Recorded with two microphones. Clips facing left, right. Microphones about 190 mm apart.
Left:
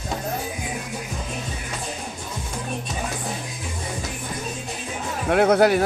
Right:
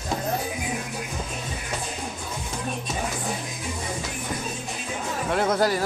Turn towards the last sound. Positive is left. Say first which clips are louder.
# left 6 dB
turn(degrees=65)  # may be behind; listen again after turning